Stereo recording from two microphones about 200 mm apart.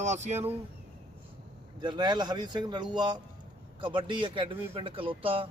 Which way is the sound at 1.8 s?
20° right (ahead or behind).